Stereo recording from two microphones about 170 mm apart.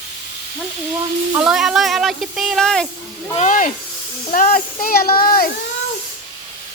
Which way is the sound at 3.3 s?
50° left (ahead or behind).